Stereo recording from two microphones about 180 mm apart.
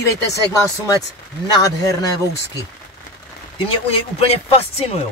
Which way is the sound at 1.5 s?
20° left (ahead or behind).